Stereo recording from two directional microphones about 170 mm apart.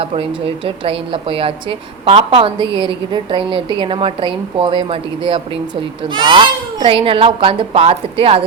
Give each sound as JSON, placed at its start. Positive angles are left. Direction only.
{"t": 0.0, "sound": "a woman's voice", "side_deg": -35}